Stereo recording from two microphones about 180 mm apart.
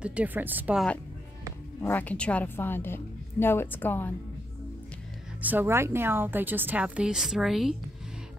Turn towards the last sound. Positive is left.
turn(degrees=0)  # may be behind; listen again after turning